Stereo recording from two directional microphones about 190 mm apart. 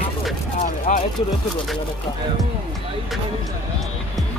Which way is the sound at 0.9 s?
45° left (ahead or behind).